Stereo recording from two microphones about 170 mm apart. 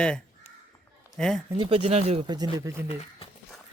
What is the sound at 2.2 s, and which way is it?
Speech, 25° right (ahead or behind).